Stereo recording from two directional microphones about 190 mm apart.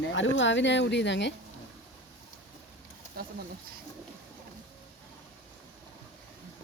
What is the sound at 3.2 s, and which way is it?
Bird, 55° right (ahead or behind).